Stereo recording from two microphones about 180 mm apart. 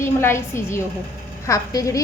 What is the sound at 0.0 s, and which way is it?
A woman's voice, 15° left (ahead or behind).